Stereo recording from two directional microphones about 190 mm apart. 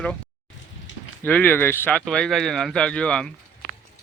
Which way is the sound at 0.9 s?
75° left (ahead or behind).